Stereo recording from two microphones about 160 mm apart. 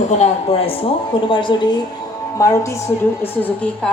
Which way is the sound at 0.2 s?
40° left (ahead or behind).